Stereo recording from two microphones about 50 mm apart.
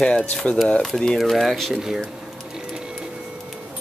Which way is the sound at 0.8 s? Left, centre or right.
Centre.